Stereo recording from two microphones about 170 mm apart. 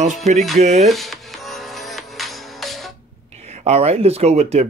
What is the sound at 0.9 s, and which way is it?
Music, centre (ahead or behind).